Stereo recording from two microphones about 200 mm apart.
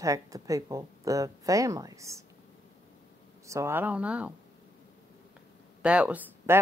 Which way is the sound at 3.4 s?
15° right (ahead or behind).